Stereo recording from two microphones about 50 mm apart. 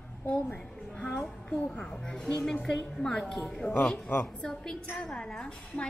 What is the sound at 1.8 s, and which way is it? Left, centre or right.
A woman's voice, centre.